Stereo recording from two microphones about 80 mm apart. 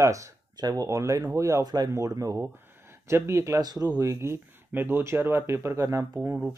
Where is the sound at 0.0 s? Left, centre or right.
Right.